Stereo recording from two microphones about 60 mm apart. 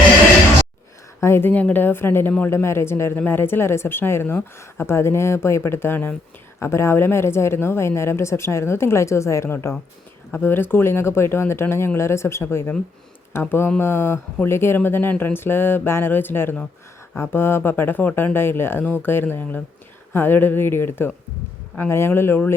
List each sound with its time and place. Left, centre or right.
1.2 s speech: left
1.5 s speech: left
6.6 s speech: left